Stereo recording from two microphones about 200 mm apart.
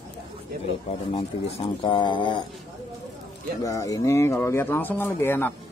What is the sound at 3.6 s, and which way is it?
Speech, 15° left (ahead or behind).